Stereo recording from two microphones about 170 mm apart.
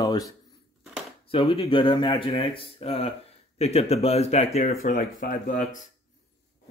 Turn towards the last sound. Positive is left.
turn(degrees=50)  # may be behind; listen again after turning